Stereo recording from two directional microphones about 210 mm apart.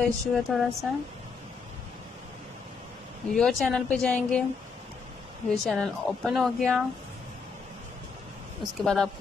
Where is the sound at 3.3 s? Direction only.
5° left (ahead or behind).